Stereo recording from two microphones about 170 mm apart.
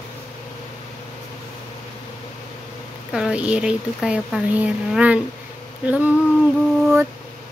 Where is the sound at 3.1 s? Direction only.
5° right (ahead or behind).